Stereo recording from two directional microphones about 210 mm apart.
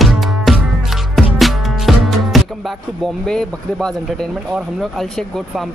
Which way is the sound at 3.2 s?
5° left (ahead or behind).